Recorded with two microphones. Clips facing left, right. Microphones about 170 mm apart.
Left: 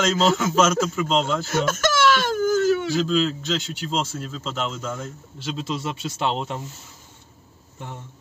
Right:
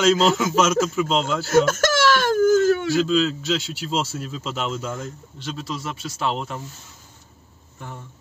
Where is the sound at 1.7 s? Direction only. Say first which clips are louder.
Right 1 dB; 50° right (ahead or behind).